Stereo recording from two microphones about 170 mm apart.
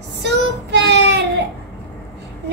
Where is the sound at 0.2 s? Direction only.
90° right.